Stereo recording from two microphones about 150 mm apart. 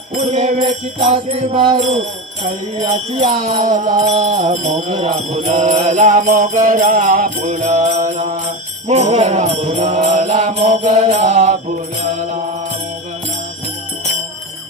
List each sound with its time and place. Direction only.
0.2 s mantra: 50° right (ahead or behind)
2.8 s mantra: 50° right (ahead or behind)